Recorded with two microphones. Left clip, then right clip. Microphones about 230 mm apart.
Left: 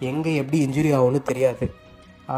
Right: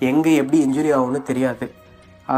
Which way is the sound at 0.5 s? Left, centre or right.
Left.